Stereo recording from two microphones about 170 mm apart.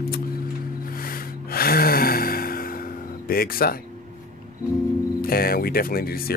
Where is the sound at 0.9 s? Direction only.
60° left (ahead or behind).